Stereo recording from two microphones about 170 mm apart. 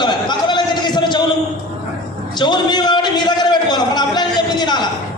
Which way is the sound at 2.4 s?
25° left (ahead or behind).